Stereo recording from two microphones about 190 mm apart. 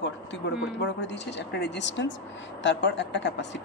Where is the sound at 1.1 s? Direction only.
65° left (ahead or behind).